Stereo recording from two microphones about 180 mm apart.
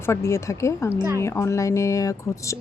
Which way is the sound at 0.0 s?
15° left (ahead or behind).